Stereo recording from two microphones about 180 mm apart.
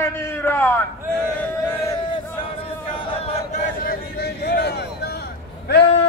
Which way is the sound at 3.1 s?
35° left (ahead or behind).